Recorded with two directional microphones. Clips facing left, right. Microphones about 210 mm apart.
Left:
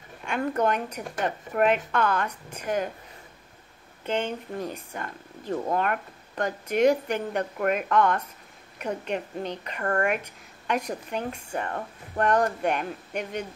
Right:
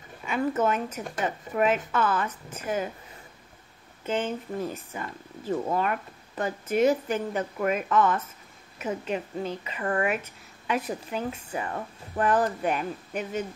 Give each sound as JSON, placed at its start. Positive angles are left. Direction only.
{"t": 0.2, "sound": "speech", "side_deg": -5}
{"t": 4.0, "sound": "speech", "side_deg": -5}